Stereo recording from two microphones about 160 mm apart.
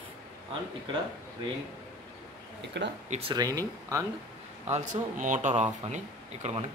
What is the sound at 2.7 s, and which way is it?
Speech, 90° right.